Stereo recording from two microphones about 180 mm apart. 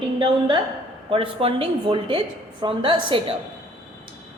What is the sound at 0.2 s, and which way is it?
A woman's voice, 25° right (ahead or behind).